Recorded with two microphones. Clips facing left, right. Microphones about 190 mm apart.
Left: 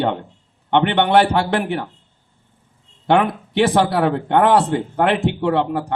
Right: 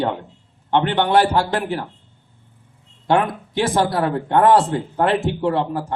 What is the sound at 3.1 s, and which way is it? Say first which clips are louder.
A man's voice: left 2 dB; 65° left (ahead or behind).